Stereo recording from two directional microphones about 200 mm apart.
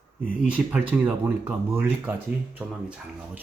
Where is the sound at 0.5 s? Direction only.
5° right (ahead or behind).